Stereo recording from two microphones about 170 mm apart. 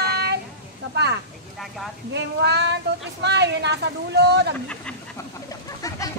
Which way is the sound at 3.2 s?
90° right.